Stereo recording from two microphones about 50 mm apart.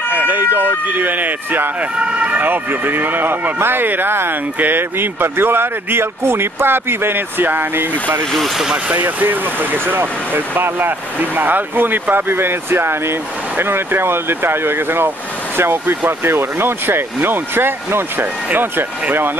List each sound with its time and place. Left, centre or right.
0.1 s emergency vehicle: right
0.4 s speech: right